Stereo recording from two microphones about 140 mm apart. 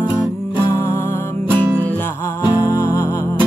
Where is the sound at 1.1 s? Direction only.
15° left (ahead or behind).